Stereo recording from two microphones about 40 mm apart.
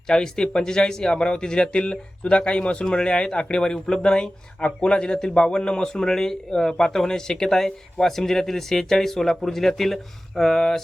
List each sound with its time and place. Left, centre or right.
0.1 s speech: centre